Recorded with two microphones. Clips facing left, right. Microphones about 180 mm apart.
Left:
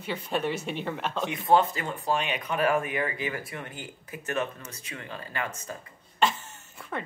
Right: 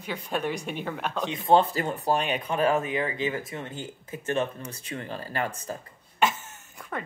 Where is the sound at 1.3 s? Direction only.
25° right (ahead or behind).